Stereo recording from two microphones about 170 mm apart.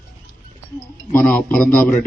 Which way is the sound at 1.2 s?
5° left (ahead or behind).